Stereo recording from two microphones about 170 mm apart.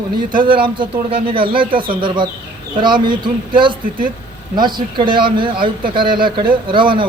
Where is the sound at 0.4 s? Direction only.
30° right (ahead or behind).